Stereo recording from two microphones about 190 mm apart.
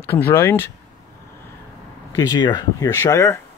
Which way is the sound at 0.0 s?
10° left (ahead or behind).